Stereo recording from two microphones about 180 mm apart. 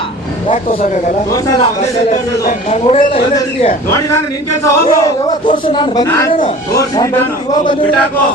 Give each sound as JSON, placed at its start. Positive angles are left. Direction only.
{"t": 0.4, "sound": "a man's voice", "side_deg": 30}
{"t": 1.8, "sound": "a man's voice", "side_deg": 40}
{"t": 4.6, "sound": "speech", "side_deg": 20}